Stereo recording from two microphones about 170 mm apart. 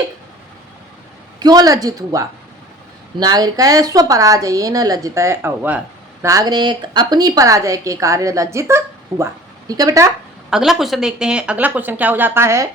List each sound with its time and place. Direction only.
1.4 s a woman's voice: 20° right (ahead or behind)
10.5 s speech: centre (ahead or behind)